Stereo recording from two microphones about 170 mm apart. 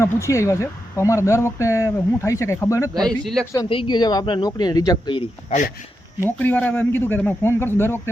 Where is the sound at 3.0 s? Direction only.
Centre (ahead or behind).